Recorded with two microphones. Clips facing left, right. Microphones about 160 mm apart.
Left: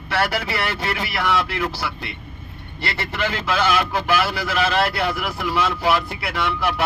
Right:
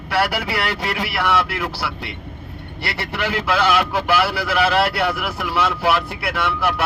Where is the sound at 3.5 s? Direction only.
85° right.